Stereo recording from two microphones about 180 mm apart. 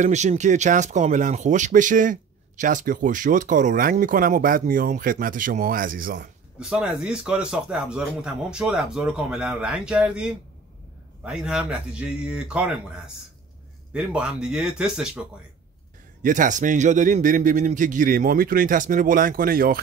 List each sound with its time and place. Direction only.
0.0 s speech: 40° right (ahead or behind)
6.6 s a man's voice: 5° right (ahead or behind)
16.2 s speech: 45° right (ahead or behind)